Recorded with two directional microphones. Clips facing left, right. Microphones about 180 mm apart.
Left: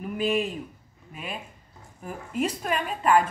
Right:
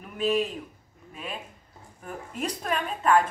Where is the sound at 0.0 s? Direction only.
5° left (ahead or behind).